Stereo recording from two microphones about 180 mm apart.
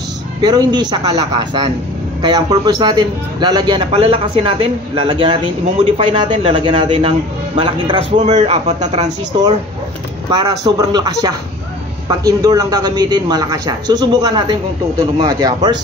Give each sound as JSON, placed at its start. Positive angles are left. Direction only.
{"t": 0.4, "sound": "a man's voice", "side_deg": -20}
{"t": 8.2, "sound": "a man's voice", "side_deg": -40}
{"t": 10.3, "sound": "a man's voice", "side_deg": -20}